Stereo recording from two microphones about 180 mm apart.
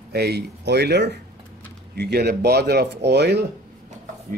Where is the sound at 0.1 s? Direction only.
65° right (ahead or behind).